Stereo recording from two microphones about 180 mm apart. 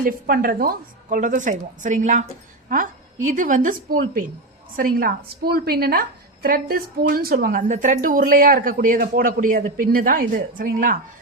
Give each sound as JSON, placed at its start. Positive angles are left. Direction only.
{"t": 0.0, "sound": "a woman's voice", "side_deg": -55}